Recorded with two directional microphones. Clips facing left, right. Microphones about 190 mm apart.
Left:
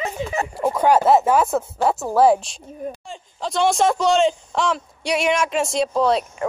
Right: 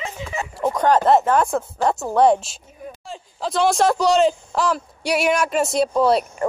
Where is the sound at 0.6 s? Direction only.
10° left (ahead or behind).